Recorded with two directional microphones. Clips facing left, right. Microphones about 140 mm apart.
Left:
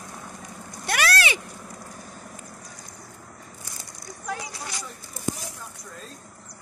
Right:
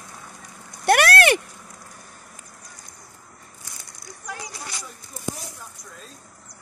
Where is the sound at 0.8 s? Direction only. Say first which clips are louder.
Right 8 dB; 55° right (ahead or behind).